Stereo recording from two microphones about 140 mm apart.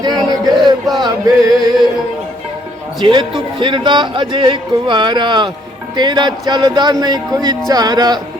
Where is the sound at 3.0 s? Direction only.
40° right (ahead or behind).